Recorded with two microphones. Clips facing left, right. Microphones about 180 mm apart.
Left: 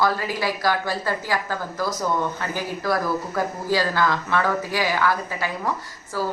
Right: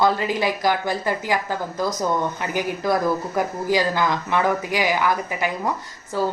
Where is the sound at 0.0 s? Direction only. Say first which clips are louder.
Right 3 dB; 20° right (ahead or behind).